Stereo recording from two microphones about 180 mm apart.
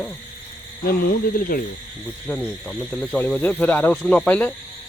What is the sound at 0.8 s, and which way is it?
Speech, 55° left (ahead or behind).